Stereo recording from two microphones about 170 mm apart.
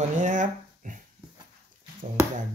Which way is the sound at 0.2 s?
50° right (ahead or behind).